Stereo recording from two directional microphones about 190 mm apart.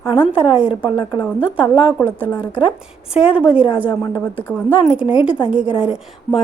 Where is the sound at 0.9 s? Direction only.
20° left (ahead or behind).